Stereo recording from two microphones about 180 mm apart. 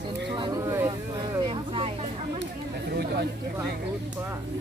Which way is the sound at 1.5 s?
30° right (ahead or behind).